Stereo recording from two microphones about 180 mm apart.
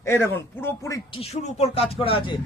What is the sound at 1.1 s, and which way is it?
Speech, 35° left (ahead or behind).